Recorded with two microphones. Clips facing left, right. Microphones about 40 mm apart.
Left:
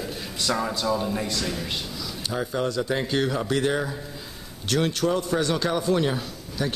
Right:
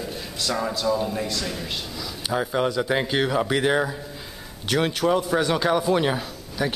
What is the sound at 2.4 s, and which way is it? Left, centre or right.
A man's voice, centre.